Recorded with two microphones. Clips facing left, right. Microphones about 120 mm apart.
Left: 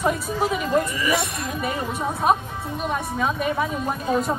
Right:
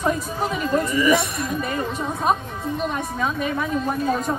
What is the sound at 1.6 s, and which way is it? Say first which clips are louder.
A woman's voice: even; 10° left (ahead or behind).